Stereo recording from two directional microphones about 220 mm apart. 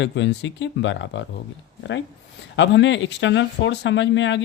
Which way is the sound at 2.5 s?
55° left (ahead or behind).